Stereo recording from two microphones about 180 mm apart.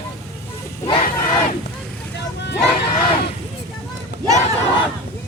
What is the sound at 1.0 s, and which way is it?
Battle cry, 50° left (ahead or behind).